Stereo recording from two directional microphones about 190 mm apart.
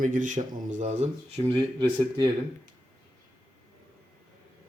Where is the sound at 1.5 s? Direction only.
25° right (ahead or behind).